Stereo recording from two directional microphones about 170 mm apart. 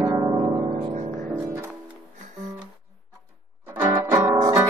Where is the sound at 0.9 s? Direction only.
45° right (ahead or behind).